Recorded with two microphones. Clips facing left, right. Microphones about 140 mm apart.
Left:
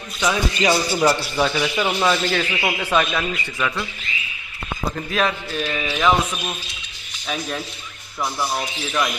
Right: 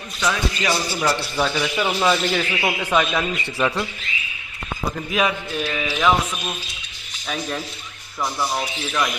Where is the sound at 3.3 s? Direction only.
30° right (ahead or behind).